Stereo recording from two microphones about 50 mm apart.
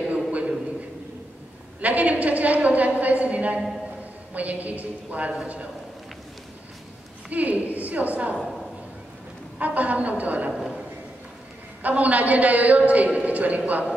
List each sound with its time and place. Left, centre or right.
0.1 s a sound: right
1.8 s a woman's voice: right
7.2 s a woman's voice: right
9.6 s a woman's voice: right
11.8 s a woman's voice: right